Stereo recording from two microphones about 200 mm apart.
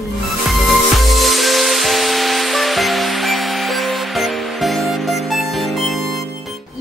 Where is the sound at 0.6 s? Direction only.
Centre (ahead or behind).